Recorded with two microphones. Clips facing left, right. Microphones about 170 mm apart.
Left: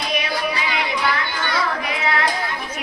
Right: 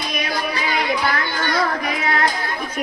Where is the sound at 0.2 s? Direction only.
45° right (ahead or behind).